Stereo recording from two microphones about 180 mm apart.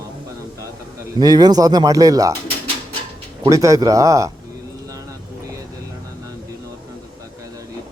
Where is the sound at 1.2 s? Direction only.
20° right (ahead or behind).